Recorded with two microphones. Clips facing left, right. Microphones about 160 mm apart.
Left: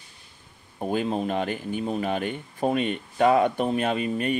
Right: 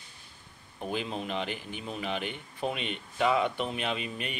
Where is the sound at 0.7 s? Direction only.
40° left (ahead or behind).